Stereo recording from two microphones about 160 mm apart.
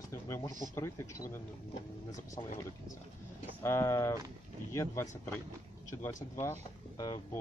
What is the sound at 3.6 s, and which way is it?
Speech, 20° left (ahead or behind).